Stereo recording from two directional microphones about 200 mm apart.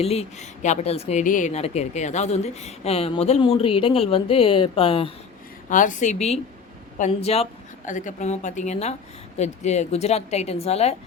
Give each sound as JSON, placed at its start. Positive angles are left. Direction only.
{"t": 0.0, "sound": "a woman's voice", "side_deg": 30}
{"t": 5.6, "sound": "a woman's voice", "side_deg": 40}